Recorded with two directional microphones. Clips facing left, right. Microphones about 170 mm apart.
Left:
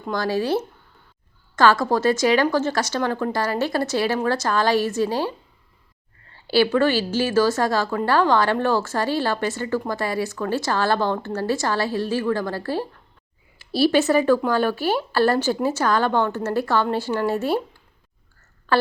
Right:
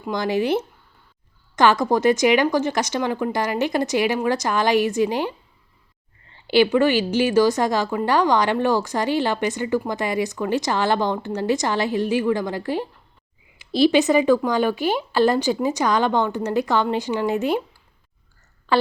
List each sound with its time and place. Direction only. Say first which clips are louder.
0.1 s a woman's voice: right 1 dB; 20° right (ahead or behind)
6.3 s a woman's voice: right 2 dB; 15° right (ahead or behind)